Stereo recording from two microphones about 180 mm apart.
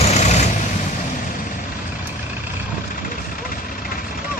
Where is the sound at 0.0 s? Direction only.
40° left (ahead or behind).